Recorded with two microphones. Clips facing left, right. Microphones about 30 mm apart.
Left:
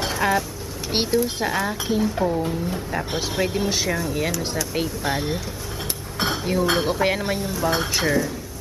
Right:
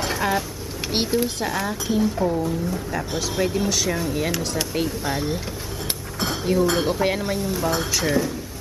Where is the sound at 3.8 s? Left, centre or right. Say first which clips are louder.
Even; centre.